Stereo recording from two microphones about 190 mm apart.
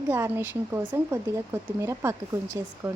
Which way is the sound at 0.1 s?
15° right (ahead or behind).